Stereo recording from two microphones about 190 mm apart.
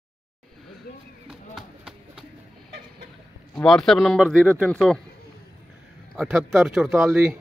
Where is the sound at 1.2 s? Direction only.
5° right (ahead or behind).